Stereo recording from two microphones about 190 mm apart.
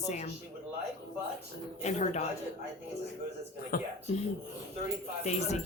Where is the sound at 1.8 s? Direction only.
35° left (ahead or behind).